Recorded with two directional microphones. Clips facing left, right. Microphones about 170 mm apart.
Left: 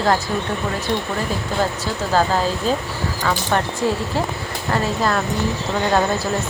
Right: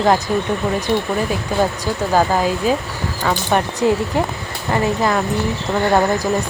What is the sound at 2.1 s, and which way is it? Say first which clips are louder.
Speech: right 2 dB; 10° right (ahead or behind).